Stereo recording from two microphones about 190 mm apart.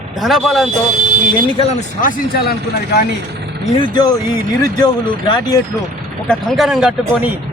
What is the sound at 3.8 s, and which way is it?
Speech, 20° left (ahead or behind).